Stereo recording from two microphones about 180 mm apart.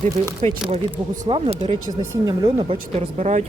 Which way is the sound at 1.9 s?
20° right (ahead or behind).